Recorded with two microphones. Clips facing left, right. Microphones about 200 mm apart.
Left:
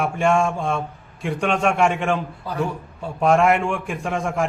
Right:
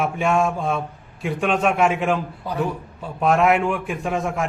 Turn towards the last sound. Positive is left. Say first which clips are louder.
# even
turn(degrees=0)  # may be behind; listen again after turning